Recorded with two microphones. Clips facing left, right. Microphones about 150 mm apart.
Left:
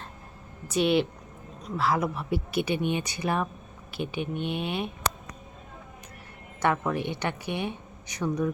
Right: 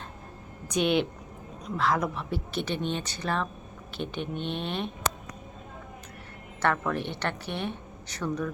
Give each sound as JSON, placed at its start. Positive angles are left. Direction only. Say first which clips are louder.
{"t": 0.7, "sound": "a woman's voice", "louder": "left 2 dB", "side_deg": 5}
{"t": 6.6, "sound": "a woman's voice", "louder": "left 1 dB", "side_deg": 10}